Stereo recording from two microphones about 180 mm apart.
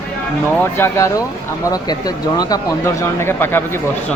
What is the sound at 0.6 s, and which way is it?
Speech, 15° left (ahead or behind).